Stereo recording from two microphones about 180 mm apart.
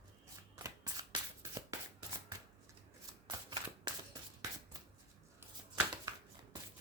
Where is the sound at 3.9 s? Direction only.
25° right (ahead or behind).